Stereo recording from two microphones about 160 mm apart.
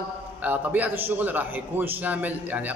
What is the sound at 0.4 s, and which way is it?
A man's voice, 10° right (ahead or behind).